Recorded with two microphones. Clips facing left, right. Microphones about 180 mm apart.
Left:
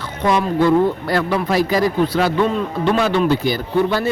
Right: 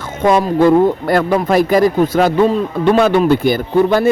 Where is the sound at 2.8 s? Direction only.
50° right (ahead or behind).